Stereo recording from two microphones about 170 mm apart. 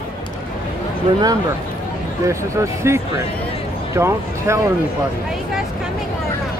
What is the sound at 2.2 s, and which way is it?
Speech, 15° right (ahead or behind).